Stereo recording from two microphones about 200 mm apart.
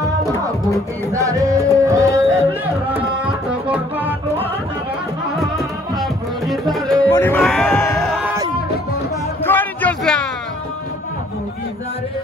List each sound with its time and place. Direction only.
0.0 s music: 15° right (ahead or behind)
3.6 s music: 5° right (ahead or behind)
5.4 s music: centre (ahead or behind)
7.0 s music: 10° left (ahead or behind)
7.4 s a sound: centre (ahead or behind)
9.4 s a sound: 10° left (ahead or behind)